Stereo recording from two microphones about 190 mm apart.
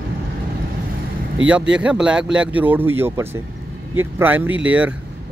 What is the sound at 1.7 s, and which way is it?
Speech, 5° right (ahead or behind).